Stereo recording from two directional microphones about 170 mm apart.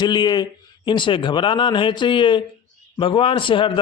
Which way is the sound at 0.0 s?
25° left (ahead or behind).